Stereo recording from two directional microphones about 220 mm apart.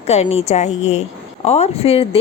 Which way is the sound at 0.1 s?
30° left (ahead or behind).